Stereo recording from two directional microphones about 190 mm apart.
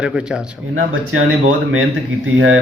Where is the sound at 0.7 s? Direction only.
90° right.